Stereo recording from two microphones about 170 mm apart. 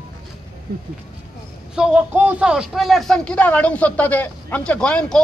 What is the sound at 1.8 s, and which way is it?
Speech, 5° right (ahead or behind).